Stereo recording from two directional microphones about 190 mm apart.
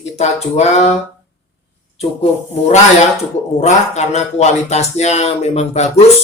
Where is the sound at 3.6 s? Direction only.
35° left (ahead or behind).